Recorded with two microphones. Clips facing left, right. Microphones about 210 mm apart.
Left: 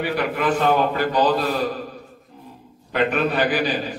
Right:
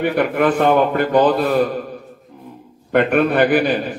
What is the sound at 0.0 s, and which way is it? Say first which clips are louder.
A man's voice: right 6 dB; 55° right (ahead or behind).